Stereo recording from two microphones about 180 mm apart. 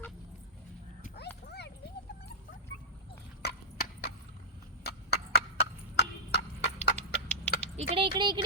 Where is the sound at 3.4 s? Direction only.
65° left (ahead or behind).